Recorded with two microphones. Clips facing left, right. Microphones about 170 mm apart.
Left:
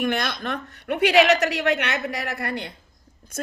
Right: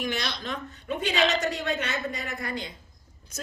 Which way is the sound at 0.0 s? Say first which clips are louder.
Left 6 dB; 55° left (ahead or behind).